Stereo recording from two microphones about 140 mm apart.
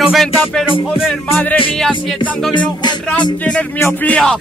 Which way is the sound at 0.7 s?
40° left (ahead or behind).